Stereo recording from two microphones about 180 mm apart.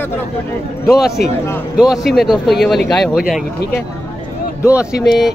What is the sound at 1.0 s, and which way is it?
Speech, 60° left (ahead or behind).